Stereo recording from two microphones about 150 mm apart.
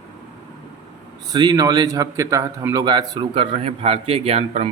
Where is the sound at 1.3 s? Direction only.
25° right (ahead or behind).